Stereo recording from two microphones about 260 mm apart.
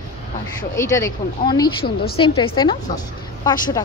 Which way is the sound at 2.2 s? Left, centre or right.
Centre.